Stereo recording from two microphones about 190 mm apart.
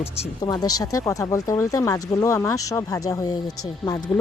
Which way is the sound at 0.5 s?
20° left (ahead or behind).